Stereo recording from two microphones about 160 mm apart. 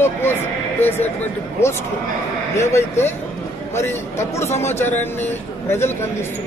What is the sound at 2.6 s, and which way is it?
Speech, 15° left (ahead or behind).